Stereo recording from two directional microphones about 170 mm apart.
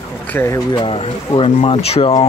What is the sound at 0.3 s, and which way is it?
Speech, 15° left (ahead or behind).